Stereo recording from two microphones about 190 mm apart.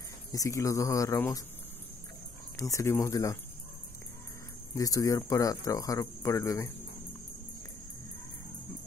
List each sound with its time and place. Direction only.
0.3 s speech: 15° left (ahead or behind)
2.6 s speech: 15° left (ahead or behind)
4.7 s speech: 20° left (ahead or behind)